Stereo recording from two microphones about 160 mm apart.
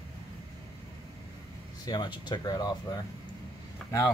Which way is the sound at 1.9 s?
25° left (ahead or behind).